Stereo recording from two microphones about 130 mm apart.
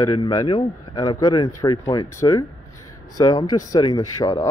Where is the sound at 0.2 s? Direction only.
35° left (ahead or behind).